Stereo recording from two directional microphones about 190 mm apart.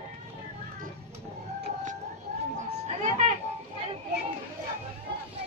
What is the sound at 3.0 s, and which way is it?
Music, 40° right (ahead or behind).